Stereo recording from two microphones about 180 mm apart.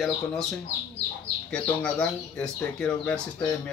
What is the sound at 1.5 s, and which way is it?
Speech, 5° left (ahead or behind).